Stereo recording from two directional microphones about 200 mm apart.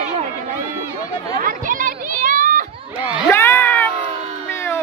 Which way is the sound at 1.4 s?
45° right (ahead or behind).